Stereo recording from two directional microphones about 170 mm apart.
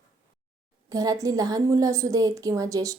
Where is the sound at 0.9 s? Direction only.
20° right (ahead or behind).